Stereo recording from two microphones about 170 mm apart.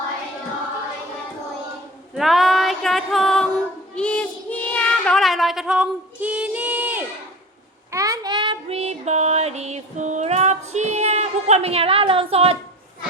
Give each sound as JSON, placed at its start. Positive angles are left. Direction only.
{"t": 2.1, "sound": "music", "side_deg": 0}
{"t": 3.9, "sound": "a sound", "side_deg": 5}
{"t": 7.9, "sound": "child singing", "side_deg": -20}